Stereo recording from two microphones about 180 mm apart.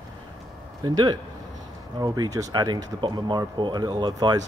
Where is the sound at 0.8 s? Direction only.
20° right (ahead or behind).